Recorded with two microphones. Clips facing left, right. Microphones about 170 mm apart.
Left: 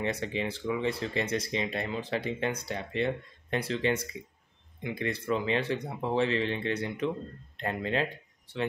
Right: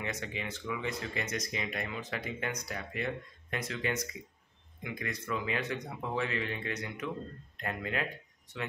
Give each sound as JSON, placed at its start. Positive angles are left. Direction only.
{"t": 0.0, "sound": "speech", "side_deg": 30}